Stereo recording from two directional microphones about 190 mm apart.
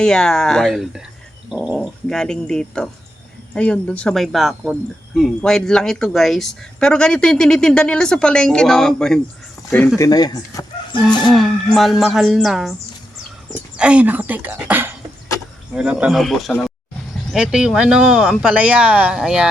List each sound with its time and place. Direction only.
0.0 s speech: 5° left (ahead or behind); by 11.0 s 20° left (ahead or behind)
11.3 s speech: centre (ahead or behind)
13.7 s speech: 5° right (ahead or behind)